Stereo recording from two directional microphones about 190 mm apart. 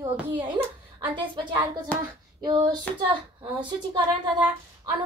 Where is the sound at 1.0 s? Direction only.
25° right (ahead or behind).